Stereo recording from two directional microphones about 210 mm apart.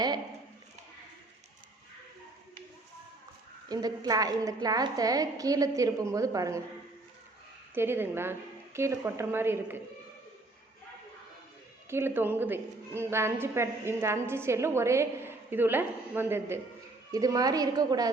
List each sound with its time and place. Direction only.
3.7 s a woman's voice: 20° right (ahead or behind)
7.8 s a woman's voice: 10° right (ahead or behind)
11.9 s a woman's voice: 10° right (ahead or behind)